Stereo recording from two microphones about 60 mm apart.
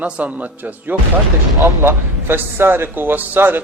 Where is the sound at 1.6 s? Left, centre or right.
Right.